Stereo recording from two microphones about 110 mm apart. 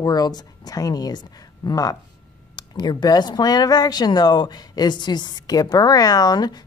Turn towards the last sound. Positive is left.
turn(degrees=40)  # may be behind; listen again after turning